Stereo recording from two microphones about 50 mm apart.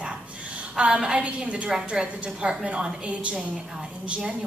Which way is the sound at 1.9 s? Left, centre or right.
Centre.